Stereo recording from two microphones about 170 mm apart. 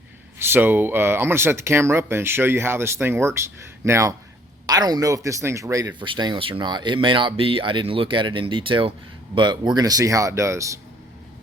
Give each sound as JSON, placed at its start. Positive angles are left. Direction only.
{"t": 0.3, "sound": "speech", "side_deg": -15}